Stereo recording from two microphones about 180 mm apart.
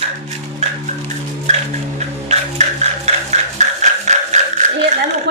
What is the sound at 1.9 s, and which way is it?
Music, 40° right (ahead or behind).